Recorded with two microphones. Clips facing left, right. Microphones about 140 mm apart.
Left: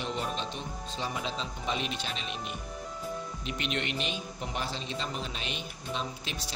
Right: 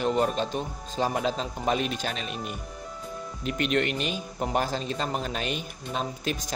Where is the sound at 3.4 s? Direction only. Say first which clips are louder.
Right 10 dB; 45° right (ahead or behind).